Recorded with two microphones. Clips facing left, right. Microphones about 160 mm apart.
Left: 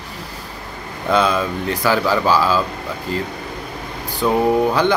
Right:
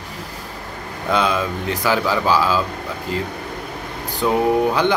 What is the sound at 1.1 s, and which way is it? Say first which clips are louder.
Speech: left 2 dB; 20° right (ahead or behind).